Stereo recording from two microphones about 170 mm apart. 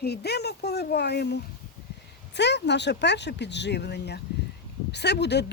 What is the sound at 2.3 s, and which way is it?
Speech, 90° left.